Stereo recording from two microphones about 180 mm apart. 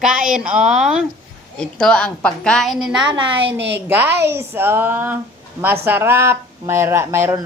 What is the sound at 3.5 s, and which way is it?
Speech, 75° right (ahead or behind).